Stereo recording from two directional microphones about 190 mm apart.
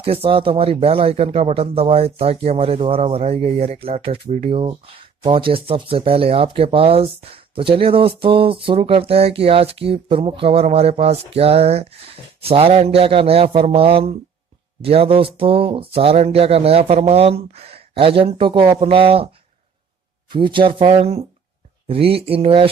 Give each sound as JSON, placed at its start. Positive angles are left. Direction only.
{"t": 0.0, "sound": "speech", "side_deg": -30}
{"t": 20.3, "sound": "speech", "side_deg": -25}